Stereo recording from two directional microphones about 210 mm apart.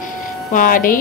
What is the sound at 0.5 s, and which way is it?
Speech, 40° left (ahead or behind).